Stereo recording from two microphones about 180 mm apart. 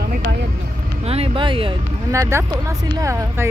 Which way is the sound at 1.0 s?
35° right (ahead or behind).